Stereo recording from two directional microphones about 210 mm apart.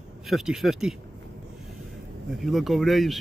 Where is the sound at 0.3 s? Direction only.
Centre (ahead or behind).